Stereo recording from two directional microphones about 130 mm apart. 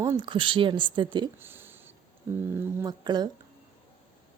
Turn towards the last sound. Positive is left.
turn(degrees=-35)  # may be behind; listen again after turning